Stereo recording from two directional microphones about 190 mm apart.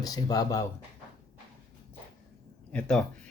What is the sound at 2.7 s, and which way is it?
Speech, 5° left (ahead or behind).